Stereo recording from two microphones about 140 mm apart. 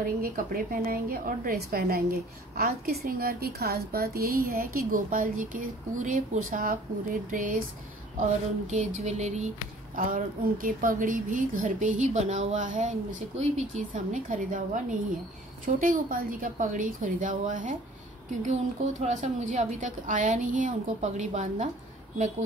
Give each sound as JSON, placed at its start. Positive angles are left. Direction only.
{"t": 0.0, "sound": "a woman's voice", "side_deg": -90}
{"t": 7.2, "sound": "a woman's voice", "side_deg": -75}
{"t": 8.2, "sound": "a woman's voice", "side_deg": -60}
{"t": 9.9, "sound": "a woman's voice", "side_deg": -75}
{"t": 15.6, "sound": "a woman's voice", "side_deg": -75}
{"t": 18.4, "sound": "a woman's voice", "side_deg": -55}